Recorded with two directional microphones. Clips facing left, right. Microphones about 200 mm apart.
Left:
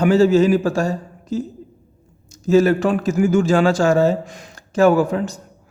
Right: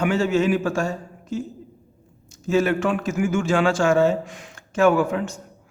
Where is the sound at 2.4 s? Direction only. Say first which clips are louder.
Left 6 dB; 40° left (ahead or behind).